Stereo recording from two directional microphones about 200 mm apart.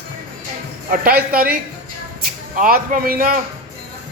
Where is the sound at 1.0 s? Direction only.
45° right (ahead or behind).